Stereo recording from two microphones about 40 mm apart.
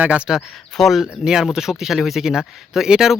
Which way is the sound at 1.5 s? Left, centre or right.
Centre.